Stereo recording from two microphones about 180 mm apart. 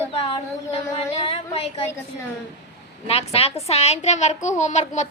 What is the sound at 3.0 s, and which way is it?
A child's voice, 35° left (ahead or behind).